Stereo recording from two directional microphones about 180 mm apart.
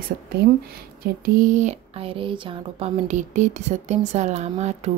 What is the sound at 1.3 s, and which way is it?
Speech, 45° right (ahead or behind).